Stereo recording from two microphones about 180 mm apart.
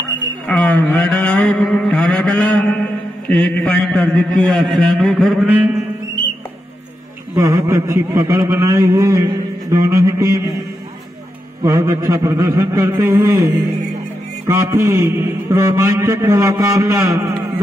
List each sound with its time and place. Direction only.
0.5 s mantra: 5° left (ahead or behind)
7.3 s a man's voice: 20° right (ahead or behind)
11.6 s mantra: 20° right (ahead or behind)
14.5 s mantra: 15° right (ahead or behind)